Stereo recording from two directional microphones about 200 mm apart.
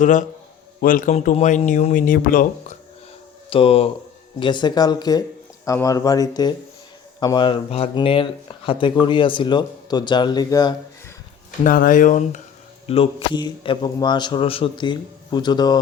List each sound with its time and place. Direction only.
0.0 s speech: 40° left (ahead or behind)
3.5 s speech: 25° left (ahead or behind)
11.6 s speech: 45° left (ahead or behind)
12.9 s speech: 30° left (ahead or behind)